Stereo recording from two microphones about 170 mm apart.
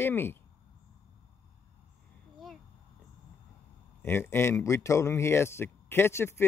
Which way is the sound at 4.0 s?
15° left (ahead or behind).